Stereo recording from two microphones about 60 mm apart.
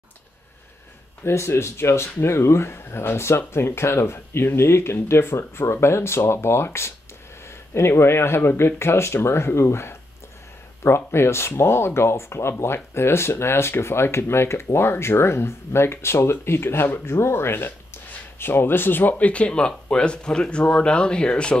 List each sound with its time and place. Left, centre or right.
1.2 s speech: left; by 21.5 s centre